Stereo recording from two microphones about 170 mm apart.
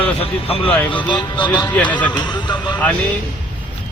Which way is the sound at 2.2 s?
25° left (ahead or behind).